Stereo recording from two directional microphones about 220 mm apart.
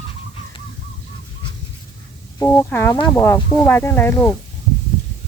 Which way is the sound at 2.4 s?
10° left (ahead or behind).